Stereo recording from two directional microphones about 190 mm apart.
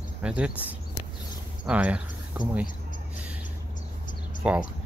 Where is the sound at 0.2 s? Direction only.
5° right (ahead or behind).